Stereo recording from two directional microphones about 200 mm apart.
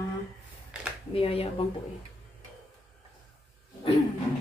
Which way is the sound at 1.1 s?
30° left (ahead or behind).